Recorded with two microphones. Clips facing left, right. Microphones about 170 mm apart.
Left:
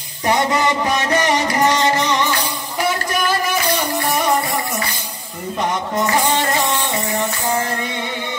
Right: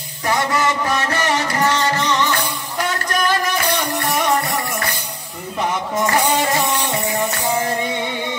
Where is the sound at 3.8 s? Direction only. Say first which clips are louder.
Left 1 dB; 5° left (ahead or behind).